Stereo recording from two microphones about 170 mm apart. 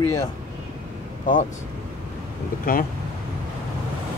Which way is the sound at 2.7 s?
55° left (ahead or behind).